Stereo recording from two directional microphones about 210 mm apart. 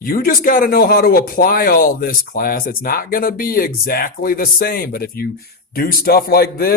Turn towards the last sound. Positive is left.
turn(degrees=45)  # may be behind; listen again after turning